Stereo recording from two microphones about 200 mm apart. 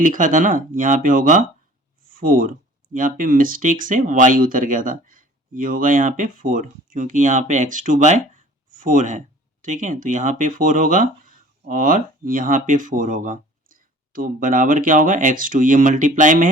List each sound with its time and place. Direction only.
0.0 s speech: 40° right (ahead or behind)